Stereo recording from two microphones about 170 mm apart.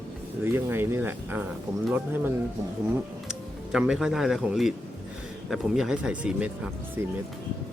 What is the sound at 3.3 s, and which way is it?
Speech, 5° right (ahead or behind).